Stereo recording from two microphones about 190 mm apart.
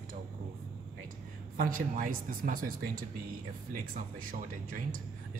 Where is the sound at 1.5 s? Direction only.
45° right (ahead or behind).